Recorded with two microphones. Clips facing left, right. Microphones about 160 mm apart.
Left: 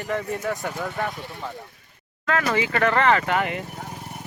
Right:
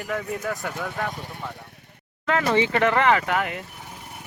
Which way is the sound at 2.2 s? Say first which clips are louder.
Right 2 dB; 25° right (ahead or behind).